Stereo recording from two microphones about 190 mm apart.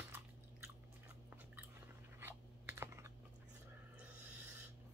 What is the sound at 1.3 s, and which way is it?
Chewing, 10° right (ahead or behind).